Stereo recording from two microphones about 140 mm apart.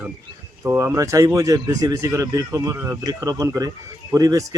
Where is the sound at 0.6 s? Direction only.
15° right (ahead or behind).